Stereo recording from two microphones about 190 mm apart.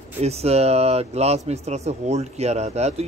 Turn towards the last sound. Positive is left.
turn(degrees=-35)  # may be behind; listen again after turning